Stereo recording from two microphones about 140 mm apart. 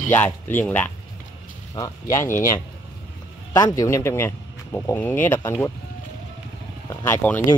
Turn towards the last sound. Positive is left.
turn(degrees=15)  # may be behind; listen again after turning